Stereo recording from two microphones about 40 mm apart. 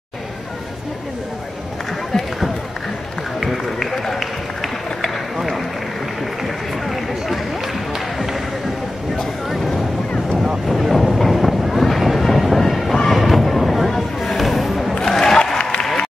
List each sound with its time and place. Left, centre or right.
3.3 s run: centre
10.7 s a sound: centre
15.0 s crowd: centre
15.3 s applause: centre